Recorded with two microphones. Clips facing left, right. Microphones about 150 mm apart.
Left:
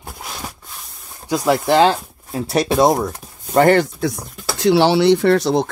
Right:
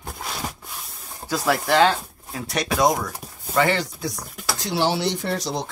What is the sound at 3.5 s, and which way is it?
Speech, 50° left (ahead or behind).